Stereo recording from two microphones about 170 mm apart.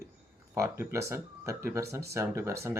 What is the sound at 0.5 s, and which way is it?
Speech, 15° right (ahead or behind).